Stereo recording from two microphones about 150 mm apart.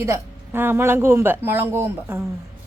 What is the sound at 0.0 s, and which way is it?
A woman's voice, 15° right (ahead or behind).